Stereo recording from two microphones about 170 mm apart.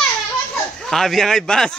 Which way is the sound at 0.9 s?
Centre (ahead or behind).